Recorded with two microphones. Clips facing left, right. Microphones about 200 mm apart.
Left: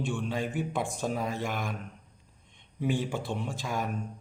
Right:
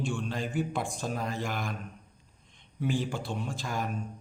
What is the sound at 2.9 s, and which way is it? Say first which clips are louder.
Speech: even; 20° left (ahead or behind).